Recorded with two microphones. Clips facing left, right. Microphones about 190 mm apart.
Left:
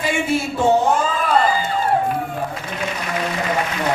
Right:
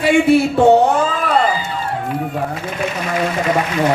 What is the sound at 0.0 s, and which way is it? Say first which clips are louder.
Speech: right 8 dB; 65° right (ahead or behind).